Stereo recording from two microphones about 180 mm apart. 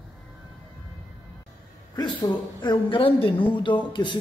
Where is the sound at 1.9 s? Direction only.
25° left (ahead or behind).